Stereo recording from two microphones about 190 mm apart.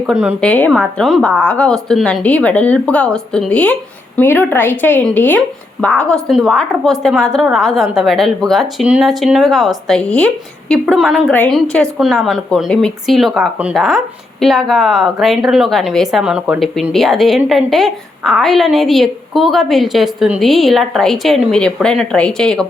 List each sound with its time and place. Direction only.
0.0 s a woman's voice: 5° right (ahead or behind)
0.4 s a woman's voice: 5° left (ahead or behind)